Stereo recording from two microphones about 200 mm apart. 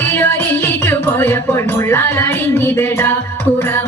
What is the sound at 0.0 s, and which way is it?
Music, 10° left (ahead or behind).